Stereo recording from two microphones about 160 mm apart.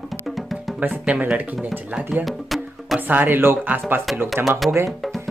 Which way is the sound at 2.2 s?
Centre (ahead or behind).